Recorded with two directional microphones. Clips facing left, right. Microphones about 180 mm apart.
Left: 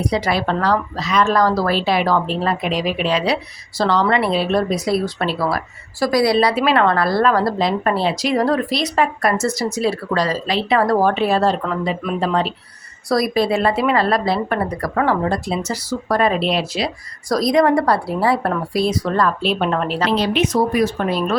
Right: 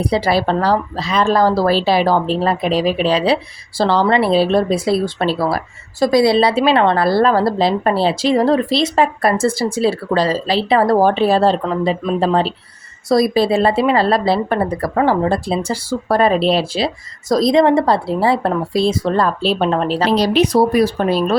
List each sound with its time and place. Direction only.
0.0 s a woman's voice: 30° right (ahead or behind)